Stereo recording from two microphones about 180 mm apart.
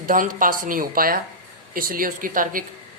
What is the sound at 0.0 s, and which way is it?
Speech, 50° right (ahead or behind).